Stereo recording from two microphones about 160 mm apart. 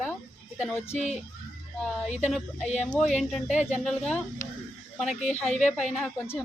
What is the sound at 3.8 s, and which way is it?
Speech, 5° left (ahead or behind).